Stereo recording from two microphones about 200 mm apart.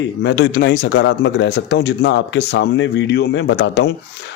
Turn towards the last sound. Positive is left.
turn(degrees=60)  # may be behind; listen again after turning